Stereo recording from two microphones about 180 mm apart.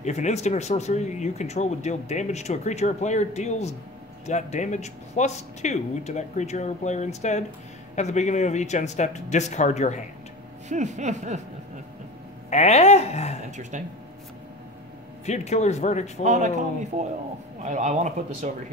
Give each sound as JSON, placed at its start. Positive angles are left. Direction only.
{"t": 0.0, "sound": "speech", "side_deg": 40}
{"t": 10.7, "sound": "speech", "side_deg": -40}
{"t": 12.4, "sound": "speech", "side_deg": 40}
{"t": 13.5, "sound": "speech", "side_deg": -40}
{"t": 15.2, "sound": "speech", "side_deg": 40}
{"t": 16.3, "sound": "speech", "side_deg": -40}
{"t": 17.6, "sound": "speech", "side_deg": -40}